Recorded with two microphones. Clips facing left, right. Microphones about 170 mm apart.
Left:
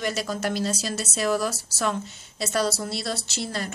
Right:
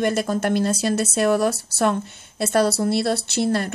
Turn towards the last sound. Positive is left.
turn(degrees=-60)  # may be behind; listen again after turning